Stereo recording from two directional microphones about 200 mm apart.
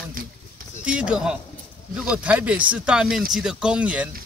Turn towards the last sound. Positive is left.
turn(degrees=-5)  # may be behind; listen again after turning